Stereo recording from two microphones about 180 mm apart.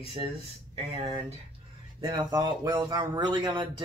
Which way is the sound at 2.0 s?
25° right (ahead or behind).